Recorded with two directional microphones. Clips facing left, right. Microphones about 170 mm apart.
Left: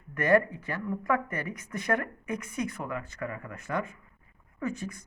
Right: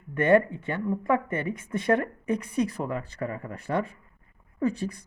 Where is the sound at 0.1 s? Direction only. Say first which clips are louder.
Right 3 dB; 25° right (ahead or behind).